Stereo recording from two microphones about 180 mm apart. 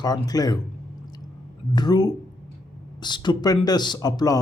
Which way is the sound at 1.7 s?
20° left (ahead or behind).